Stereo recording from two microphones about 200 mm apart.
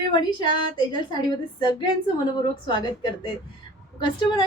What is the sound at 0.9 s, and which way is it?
A woman's voice, 20° left (ahead or behind).